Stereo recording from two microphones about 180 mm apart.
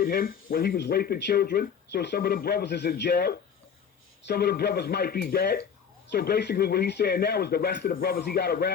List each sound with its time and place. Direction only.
0.0 s speech: 55° left (ahead or behind)